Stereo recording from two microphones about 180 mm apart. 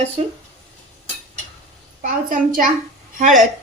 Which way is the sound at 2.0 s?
50° right (ahead or behind).